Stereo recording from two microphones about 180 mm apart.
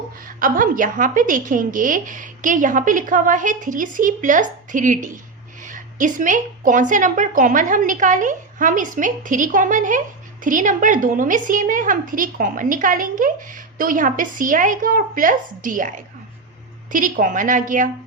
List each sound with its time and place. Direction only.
0.3 s a woman's voice: 50° right (ahead or behind)